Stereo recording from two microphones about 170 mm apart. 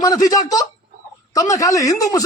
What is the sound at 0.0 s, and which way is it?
Speech, 20° left (ahead or behind).